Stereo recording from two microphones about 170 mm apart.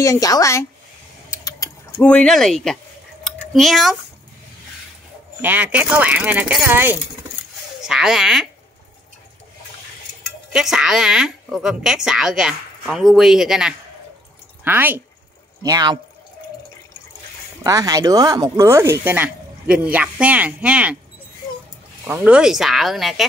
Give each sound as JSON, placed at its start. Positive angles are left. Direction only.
{"t": 0.0, "sound": "a woman's voice", "side_deg": 20}
{"t": 1.3, "sound": "a sound", "side_deg": 20}
{"t": 2.0, "sound": "a woman's voice", "side_deg": 5}
{"t": 5.4, "sound": "a woman's voice", "side_deg": -10}
{"t": 10.5, "sound": "a woman's voice", "side_deg": -5}
{"t": 15.6, "sound": "speech", "side_deg": -25}
{"t": 17.6, "sound": "speech", "side_deg": -20}
{"t": 22.0, "sound": "a woman's voice", "side_deg": -10}